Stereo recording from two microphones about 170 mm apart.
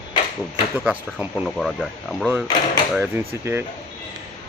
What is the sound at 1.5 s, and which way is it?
Speech, 5° left (ahead or behind).